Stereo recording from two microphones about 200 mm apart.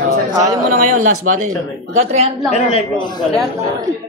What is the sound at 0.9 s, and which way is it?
Speech, 90° right.